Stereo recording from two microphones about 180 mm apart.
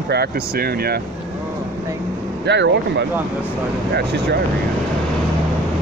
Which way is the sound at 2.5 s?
75° right (ahead or behind).